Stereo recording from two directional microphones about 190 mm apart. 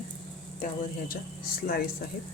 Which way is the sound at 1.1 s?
50° left (ahead or behind).